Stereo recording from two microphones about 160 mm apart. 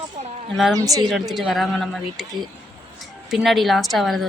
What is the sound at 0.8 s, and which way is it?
Speech, 20° right (ahead or behind).